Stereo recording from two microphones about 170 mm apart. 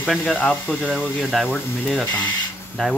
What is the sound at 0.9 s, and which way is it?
Speech, centre (ahead or behind).